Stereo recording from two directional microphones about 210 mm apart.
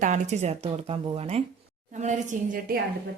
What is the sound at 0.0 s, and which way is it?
A woman's voice, 35° right (ahead or behind).